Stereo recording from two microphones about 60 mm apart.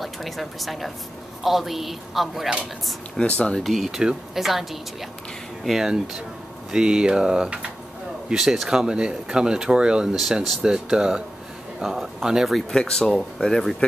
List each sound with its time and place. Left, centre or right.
0.0 s speech: centre
3.2 s speech: centre
3.6 s speech: centre
10.1 s speech: centre
12.5 s speech: centre